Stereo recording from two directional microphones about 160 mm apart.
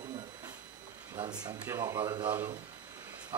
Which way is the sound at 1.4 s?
20° right (ahead or behind).